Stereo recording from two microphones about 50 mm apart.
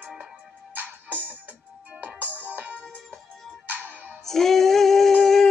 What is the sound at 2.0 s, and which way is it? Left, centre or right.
Music, right.